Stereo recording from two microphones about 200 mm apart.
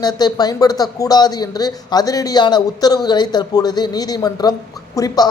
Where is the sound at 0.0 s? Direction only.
20° left (ahead or behind).